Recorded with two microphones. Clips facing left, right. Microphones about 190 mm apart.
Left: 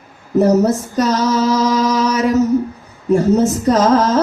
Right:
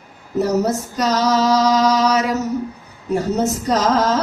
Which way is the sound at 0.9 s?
50° left (ahead or behind).